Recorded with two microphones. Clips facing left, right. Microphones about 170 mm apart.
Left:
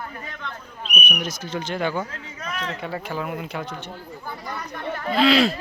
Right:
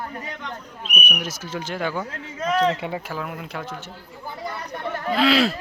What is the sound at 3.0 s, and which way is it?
Speech, centre (ahead or behind).